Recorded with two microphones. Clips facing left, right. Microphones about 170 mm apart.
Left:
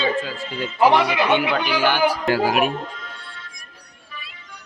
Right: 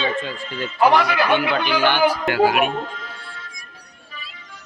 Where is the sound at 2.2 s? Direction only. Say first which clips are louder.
Right 1 dB; 40° left (ahead or behind).